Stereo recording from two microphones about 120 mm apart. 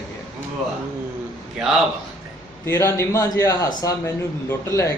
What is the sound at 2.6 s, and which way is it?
Speech, 25° left (ahead or behind).